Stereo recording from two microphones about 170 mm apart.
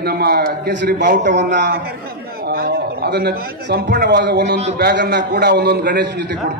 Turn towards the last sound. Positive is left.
turn(degrees=-85)